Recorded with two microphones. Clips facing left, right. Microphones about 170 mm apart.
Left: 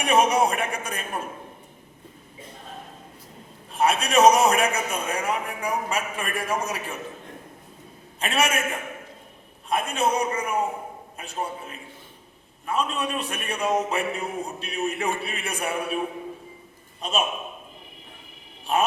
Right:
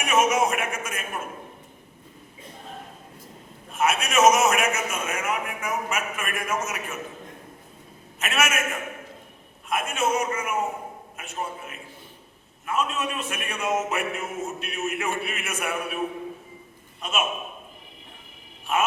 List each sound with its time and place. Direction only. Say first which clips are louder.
0.0 s a man's voice: left 2 dB; 35° left (ahead or behind)
3.7 s a man's voice: left 2 dB; 30° left (ahead or behind)
8.2 s a man's voice: left 2 dB; 30° left (ahead or behind)
17.0 s a man's voice: left 2 dB; 35° left (ahead or behind)
18.7 s a man's voice: left 2 dB; 35° left (ahead or behind)